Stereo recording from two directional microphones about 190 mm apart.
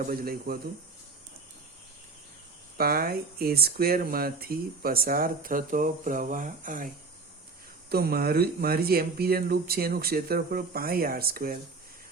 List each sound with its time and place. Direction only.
0.0 s speech: 50° right (ahead or behind)
2.7 s speech: 50° right (ahead or behind)
7.9 s speech: 55° right (ahead or behind)